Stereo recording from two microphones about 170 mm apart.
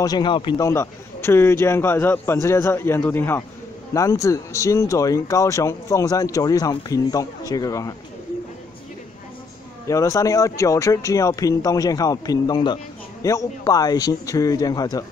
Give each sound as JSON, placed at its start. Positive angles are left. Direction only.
{"t": 0.0, "sound": "speech", "side_deg": 25}
{"t": 0.7, "sound": "a man's voice", "side_deg": 15}
{"t": 9.8, "sound": "speech", "side_deg": 20}